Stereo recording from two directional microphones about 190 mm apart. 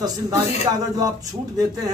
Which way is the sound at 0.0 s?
20° right (ahead or behind).